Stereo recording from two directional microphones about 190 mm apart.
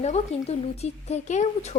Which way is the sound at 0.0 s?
35° left (ahead or behind).